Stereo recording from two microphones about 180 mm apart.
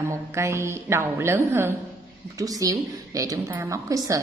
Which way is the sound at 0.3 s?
15° right (ahead or behind).